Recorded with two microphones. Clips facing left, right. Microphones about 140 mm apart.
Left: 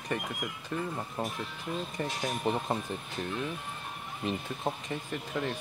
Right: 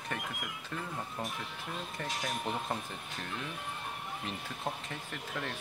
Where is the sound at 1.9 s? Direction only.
20° left (ahead or behind).